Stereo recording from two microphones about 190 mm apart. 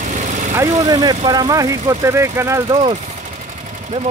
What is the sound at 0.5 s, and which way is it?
Speech, 20° right (ahead or behind).